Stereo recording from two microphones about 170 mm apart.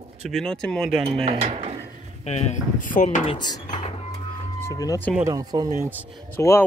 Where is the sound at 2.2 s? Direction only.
40° left (ahead or behind).